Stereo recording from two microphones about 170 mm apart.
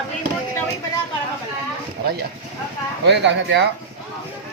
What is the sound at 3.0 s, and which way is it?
Speech, 90° right.